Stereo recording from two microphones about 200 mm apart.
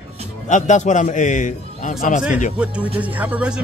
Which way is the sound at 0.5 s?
35° left (ahead or behind).